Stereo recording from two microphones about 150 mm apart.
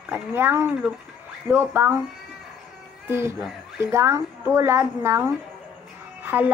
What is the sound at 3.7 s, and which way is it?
A woman's voice, 20° right (ahead or behind).